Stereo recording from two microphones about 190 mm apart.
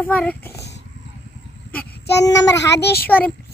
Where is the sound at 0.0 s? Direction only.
5° left (ahead or behind).